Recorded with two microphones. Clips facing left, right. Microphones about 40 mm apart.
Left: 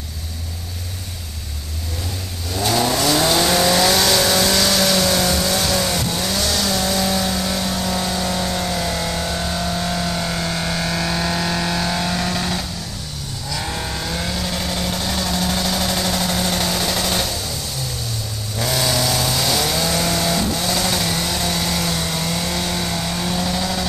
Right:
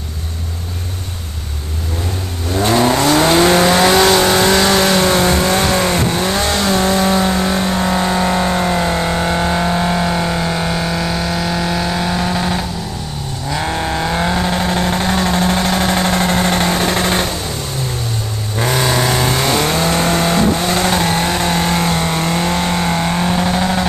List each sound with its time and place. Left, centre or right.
2.5 s vehicle: right; by 12.6 s centre
13.5 s vehicle: right
18.6 s vehicle: right